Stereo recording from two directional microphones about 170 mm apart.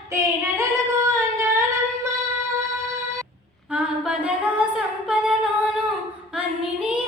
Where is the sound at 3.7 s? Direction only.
5° right (ahead or behind).